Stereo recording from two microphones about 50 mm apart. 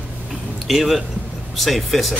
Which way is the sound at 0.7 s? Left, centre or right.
Centre.